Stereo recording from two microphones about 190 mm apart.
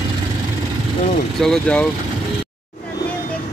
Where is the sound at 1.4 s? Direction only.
5° left (ahead or behind).